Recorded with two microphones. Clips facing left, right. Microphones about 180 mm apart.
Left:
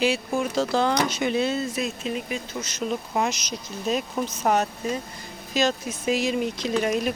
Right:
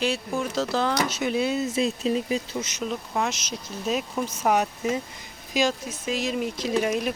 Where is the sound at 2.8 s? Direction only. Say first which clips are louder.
Left 3 dB; 5° left (ahead or behind).